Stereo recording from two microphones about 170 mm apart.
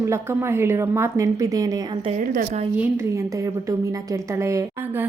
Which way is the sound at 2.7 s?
10° right (ahead or behind).